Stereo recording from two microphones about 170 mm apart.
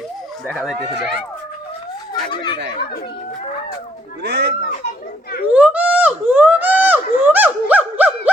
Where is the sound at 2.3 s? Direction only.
25° left (ahead or behind).